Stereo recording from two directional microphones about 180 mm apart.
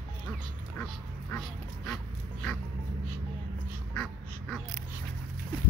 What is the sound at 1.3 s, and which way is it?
Speech, 5° left (ahead or behind).